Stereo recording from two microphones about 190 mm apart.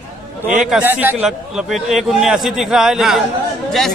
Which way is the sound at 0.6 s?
5° right (ahead or behind).